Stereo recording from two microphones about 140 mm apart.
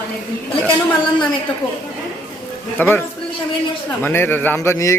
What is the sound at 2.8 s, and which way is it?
Speech, 15° left (ahead or behind).